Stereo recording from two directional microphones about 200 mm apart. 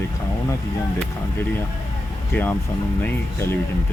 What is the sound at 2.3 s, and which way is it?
Speech, 10° left (ahead or behind).